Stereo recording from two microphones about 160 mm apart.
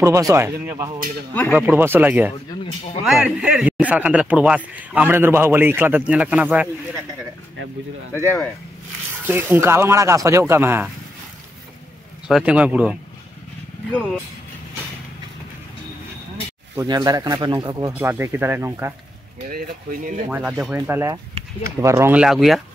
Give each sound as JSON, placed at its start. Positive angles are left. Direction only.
{"t": 0.0, "sound": "speech", "side_deg": -20}
{"t": 1.3, "sound": "speech", "side_deg": 10}
{"t": 1.7, "sound": "a man's voice", "side_deg": -15}
{"t": 8.1, "sound": "speech", "side_deg": 15}
{"t": 9.2, "sound": "a man's voice", "side_deg": -15}
{"t": 12.3, "sound": "a man's voice", "side_deg": -5}
{"t": 16.7, "sound": "speech", "side_deg": -25}
{"t": 17.9, "sound": "a man's voice", "side_deg": -10}
{"t": 20.2, "sound": "a man's voice", "side_deg": -10}
{"t": 22.1, "sound": "speech", "side_deg": -5}